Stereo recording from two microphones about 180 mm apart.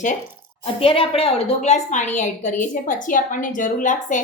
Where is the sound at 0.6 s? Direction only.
30° left (ahead or behind).